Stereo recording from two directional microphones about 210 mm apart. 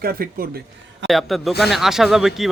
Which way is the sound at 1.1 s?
Centre (ahead or behind).